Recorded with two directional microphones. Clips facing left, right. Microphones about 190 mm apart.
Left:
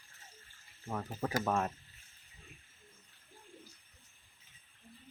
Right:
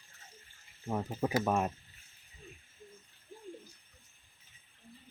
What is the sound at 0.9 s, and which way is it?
Speech, 20° right (ahead or behind).